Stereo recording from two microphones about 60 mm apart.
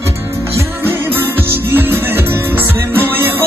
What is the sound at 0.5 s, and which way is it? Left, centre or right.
Music, right.